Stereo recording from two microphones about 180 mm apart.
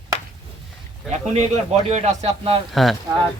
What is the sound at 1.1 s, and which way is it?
A man's voice, 40° right (ahead or behind).